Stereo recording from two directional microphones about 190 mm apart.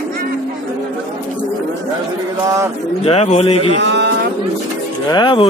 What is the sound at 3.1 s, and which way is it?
Speech, 35° left (ahead or behind).